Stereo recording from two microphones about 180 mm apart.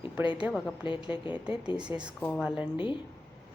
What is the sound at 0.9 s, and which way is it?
Speech, 30° left (ahead or behind).